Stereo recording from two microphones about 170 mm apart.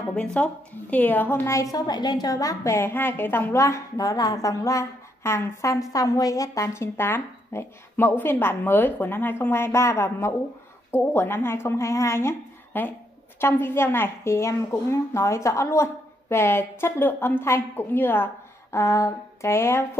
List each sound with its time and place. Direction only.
0.1 s a woman's voice: 5° left (ahead or behind)